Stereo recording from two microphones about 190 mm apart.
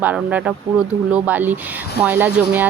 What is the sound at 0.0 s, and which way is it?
A woman's voice, 10° right (ahead or behind).